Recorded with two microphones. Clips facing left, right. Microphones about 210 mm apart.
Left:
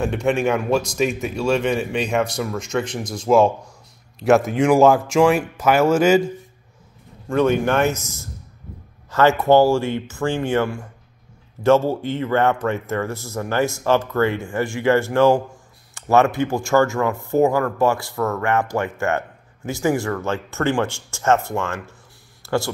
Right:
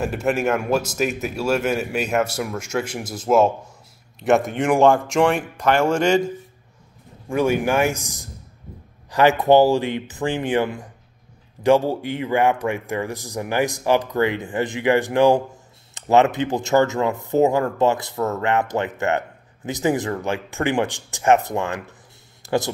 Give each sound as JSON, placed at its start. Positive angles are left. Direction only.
{"t": 0.0, "sound": "speech", "side_deg": -5}
{"t": 7.2, "sound": "speech", "side_deg": -10}
{"t": 22.4, "sound": "a sound", "side_deg": -15}